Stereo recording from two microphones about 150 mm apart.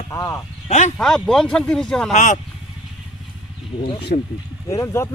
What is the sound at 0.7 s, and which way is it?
Speech, 50° left (ahead or behind).